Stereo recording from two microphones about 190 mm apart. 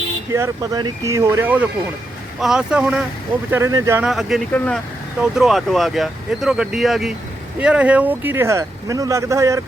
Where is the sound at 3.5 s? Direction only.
15° right (ahead or behind).